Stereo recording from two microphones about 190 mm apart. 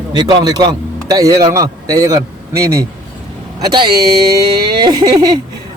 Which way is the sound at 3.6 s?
25° right (ahead or behind).